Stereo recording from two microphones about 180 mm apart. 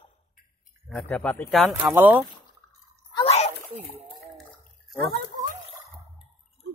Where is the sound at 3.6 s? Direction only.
10° right (ahead or behind).